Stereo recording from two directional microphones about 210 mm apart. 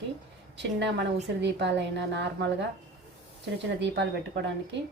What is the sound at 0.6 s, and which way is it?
A woman's voice, 55° right (ahead or behind).